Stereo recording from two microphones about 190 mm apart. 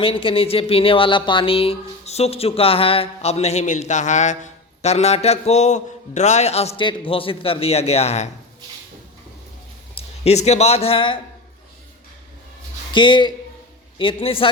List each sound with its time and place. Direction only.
0.0 s speech: 30° left (ahead or behind)
10.0 s speech: 35° left (ahead or behind)
12.9 s a woman's voice: 25° left (ahead or behind)